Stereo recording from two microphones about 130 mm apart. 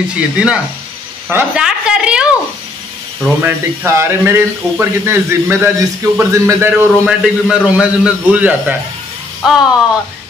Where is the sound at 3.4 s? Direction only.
20° right (ahead or behind).